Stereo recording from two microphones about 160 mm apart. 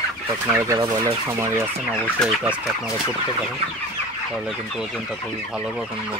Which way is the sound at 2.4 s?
10° right (ahead or behind).